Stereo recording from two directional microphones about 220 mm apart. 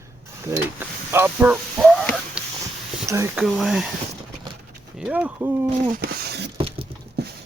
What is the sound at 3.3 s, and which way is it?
Speech, centre (ahead or behind).